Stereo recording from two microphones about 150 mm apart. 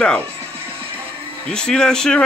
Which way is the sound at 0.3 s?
40° right (ahead or behind).